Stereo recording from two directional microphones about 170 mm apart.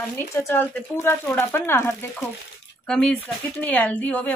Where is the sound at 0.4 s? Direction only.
15° left (ahead or behind).